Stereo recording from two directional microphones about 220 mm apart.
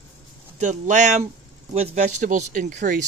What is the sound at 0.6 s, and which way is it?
Speech, 35° right (ahead or behind).